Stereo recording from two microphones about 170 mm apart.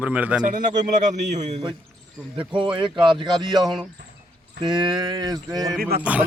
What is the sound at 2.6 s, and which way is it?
Speech, 30° right (ahead or behind).